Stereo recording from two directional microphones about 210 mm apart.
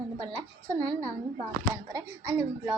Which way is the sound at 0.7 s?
15° right (ahead or behind).